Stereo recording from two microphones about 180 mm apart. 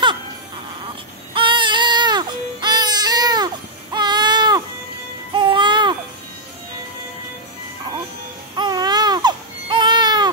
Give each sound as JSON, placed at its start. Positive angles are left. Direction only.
{"t": 1.3, "sound": "baby cry", "side_deg": -25}
{"t": 5.3, "sound": "music", "side_deg": -25}
{"t": 8.5, "sound": "baby cry", "side_deg": -25}